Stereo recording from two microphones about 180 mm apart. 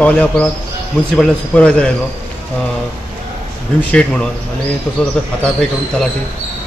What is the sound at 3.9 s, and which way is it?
A man's voice, 5° left (ahead or behind).